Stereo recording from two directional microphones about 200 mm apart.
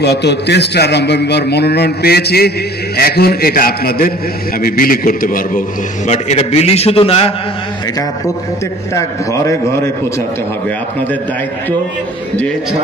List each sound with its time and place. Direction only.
0.0 s a man's voice: 55° left (ahead or behind); by 7.3 s 30° left (ahead or behind)
8.9 s a man's voice: 15° left (ahead or behind)